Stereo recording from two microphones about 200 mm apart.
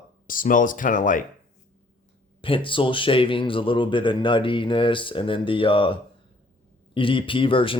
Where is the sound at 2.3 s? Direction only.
25° left (ahead or behind).